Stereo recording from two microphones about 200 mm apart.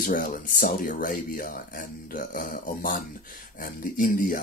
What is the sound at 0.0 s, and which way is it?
Speech, 45° left (ahead or behind).